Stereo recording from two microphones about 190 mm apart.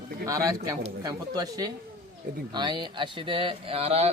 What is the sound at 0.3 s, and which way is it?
A man's voice, 15° right (ahead or behind).